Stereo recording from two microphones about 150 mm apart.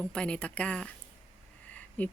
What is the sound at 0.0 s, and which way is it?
A woman's voice, 5° left (ahead or behind).